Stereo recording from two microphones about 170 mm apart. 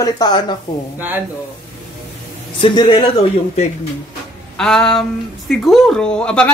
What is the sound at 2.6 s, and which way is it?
Speech, 25° left (ahead or behind).